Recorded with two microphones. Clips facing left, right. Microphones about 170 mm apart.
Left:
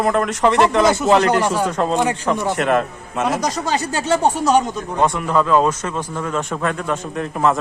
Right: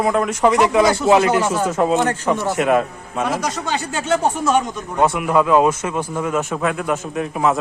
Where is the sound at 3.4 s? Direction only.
40° left (ahead or behind).